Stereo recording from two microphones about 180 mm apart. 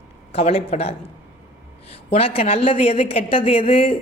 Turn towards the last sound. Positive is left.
turn(degrees=30)  # may be behind; listen again after turning